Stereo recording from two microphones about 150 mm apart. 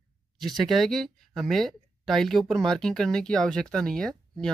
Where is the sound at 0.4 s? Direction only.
Centre (ahead or behind).